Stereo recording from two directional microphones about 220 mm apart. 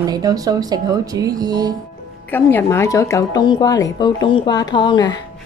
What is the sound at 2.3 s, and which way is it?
A woman's voice, 10° left (ahead or behind).